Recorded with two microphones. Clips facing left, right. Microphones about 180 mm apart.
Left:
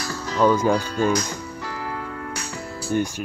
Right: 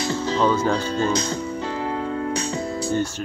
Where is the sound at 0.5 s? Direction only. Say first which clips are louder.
Left 2 dB; 10° left (ahead or behind).